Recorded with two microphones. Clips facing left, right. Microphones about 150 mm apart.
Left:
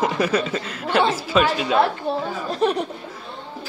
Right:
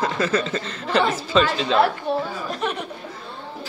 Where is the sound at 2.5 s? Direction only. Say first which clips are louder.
Left 8 dB; 35° left (ahead or behind).